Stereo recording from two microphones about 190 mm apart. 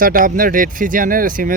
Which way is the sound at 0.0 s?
45° right (ahead or behind).